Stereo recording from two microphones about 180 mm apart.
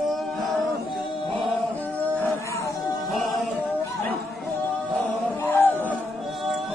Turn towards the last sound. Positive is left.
turn(degrees=10)  # may be behind; listen again after turning